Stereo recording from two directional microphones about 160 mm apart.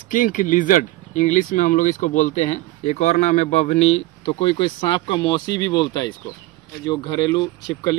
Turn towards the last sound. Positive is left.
turn(degrees=25)  # may be behind; listen again after turning